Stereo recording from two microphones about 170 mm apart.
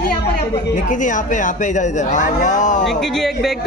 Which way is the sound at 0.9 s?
50° left (ahead or behind).